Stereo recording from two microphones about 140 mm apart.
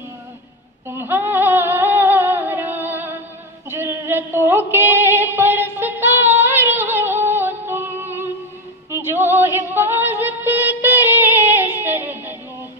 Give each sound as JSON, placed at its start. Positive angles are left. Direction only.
{"t": 0.8, "sound": "a sound", "side_deg": -15}
{"t": 3.7, "sound": "female singing", "side_deg": -20}
{"t": 8.9, "sound": "music", "side_deg": -15}